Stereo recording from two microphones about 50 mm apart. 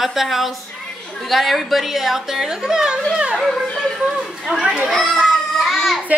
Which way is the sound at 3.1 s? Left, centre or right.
Centre.